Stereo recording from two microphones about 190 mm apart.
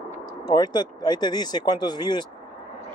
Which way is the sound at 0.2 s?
20° left (ahead or behind).